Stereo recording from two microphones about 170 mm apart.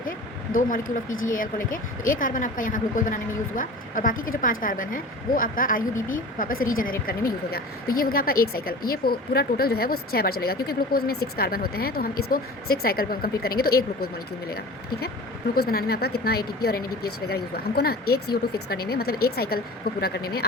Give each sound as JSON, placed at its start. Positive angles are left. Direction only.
{"t": 0.5, "sound": "speech", "side_deg": 55}